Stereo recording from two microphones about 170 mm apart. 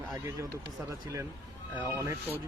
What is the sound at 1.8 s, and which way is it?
Speech, 15° right (ahead or behind).